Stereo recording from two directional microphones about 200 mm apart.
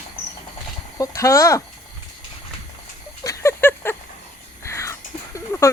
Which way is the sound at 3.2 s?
15° left (ahead or behind).